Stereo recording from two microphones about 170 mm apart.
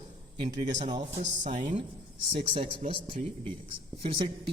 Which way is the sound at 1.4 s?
45° right (ahead or behind).